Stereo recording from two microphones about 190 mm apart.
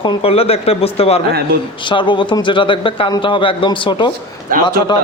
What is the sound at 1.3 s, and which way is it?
Speech, 55° right (ahead or behind).